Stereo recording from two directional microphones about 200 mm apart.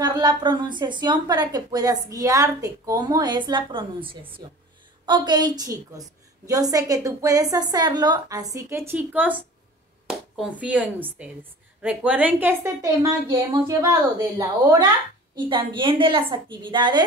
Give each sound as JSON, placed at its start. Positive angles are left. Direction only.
{"t": 0.0, "sound": "a woman's voice", "side_deg": -20}